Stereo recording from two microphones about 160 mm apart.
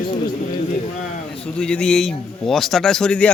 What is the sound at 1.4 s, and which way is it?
A man's voice, 5° left (ahead or behind).